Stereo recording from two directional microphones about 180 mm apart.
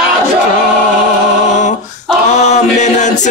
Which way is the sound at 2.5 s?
40° left (ahead or behind).